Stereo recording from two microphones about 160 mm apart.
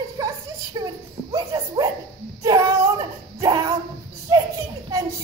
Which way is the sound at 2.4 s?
20° right (ahead or behind).